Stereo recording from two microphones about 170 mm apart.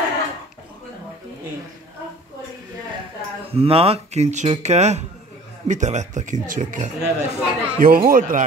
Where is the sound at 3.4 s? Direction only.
35° right (ahead or behind).